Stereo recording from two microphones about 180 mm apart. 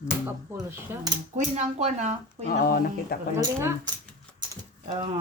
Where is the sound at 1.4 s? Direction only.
40° right (ahead or behind).